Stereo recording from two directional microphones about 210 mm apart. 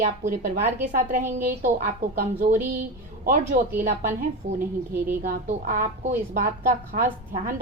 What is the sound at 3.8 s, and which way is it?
Speech, 40° right (ahead or behind).